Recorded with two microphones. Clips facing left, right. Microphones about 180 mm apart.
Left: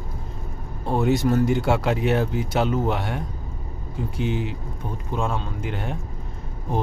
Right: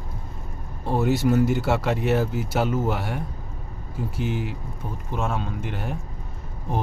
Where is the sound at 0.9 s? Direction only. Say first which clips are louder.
Left 1 dB; 5° right (ahead or behind).